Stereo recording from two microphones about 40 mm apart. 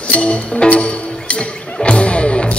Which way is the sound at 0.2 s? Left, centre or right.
Left.